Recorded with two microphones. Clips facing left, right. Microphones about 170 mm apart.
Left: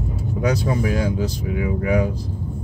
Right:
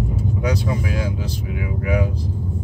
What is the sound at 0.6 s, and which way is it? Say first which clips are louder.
Speech: left 3 dB; 45° left (ahead or behind).